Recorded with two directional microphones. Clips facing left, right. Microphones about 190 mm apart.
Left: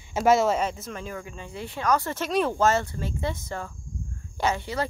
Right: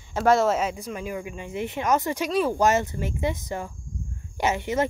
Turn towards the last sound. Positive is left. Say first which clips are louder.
# right 3 dB
turn(degrees=-20)  # may be behind; listen again after turning